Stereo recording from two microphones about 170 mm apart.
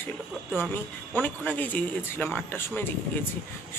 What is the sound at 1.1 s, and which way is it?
A man's voice, 10° left (ahead or behind).